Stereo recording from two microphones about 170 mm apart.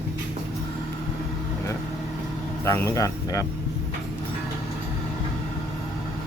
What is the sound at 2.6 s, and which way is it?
Speech, 20° left (ahead or behind).